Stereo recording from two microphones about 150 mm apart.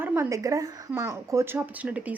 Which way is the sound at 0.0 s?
15° right (ahead or behind).